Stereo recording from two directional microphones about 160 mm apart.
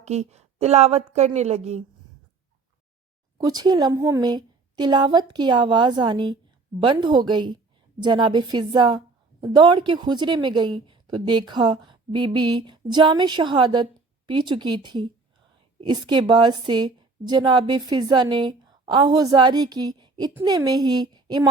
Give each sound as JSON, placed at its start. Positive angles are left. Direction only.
{"t": 0.0, "sound": "a woman's voice", "side_deg": -45}
{"t": 3.3, "sound": "a woman's voice", "side_deg": -25}